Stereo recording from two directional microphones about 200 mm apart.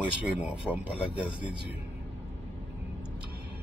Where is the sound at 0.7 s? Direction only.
Centre (ahead or behind).